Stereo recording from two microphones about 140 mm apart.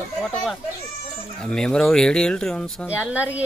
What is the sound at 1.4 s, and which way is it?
Speech, 5° left (ahead or behind).